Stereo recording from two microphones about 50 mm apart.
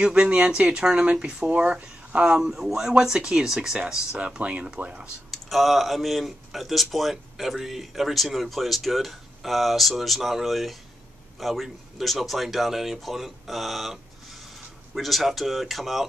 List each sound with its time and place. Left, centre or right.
0.0 s speech: centre
2.5 s speech: centre
4.2 s speech: right
5.3 s speech: centre